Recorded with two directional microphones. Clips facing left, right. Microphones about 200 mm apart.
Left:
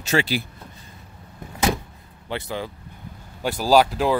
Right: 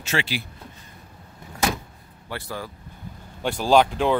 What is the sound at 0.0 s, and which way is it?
Speech, 40° left (ahead or behind).